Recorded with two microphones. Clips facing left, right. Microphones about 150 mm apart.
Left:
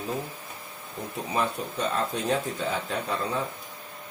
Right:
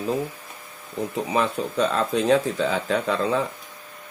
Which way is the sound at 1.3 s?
90° right.